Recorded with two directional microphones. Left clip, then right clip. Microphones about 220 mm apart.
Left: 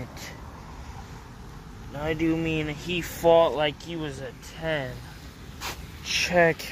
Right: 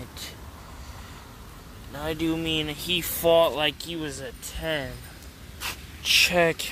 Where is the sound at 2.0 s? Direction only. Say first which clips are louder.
Left 2 dB; 15° right (ahead or behind).